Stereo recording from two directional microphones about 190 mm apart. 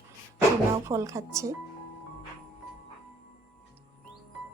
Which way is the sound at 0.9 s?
15° right (ahead or behind).